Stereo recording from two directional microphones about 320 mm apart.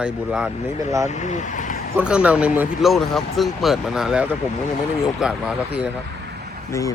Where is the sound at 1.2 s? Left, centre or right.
Left.